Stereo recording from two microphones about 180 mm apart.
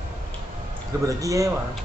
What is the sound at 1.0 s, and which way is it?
Speech, 20° right (ahead or behind).